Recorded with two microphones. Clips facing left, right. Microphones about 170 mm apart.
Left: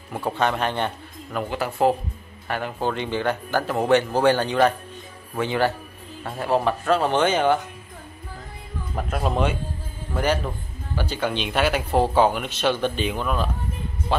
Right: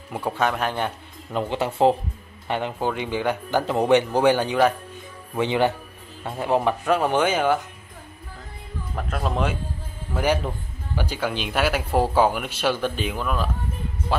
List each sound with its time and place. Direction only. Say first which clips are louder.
0.3 s speech: left 1 dB; 5° right (ahead or behind)
1.3 s speech: right 2 dB; 25° right (ahead or behind)
2.9 s speech: left 1 dB; 10° right (ahead or behind)
8.9 s speech: left 2 dB; 5° left (ahead or behind)
10.1 s speech: right 1 dB; 15° right (ahead or behind)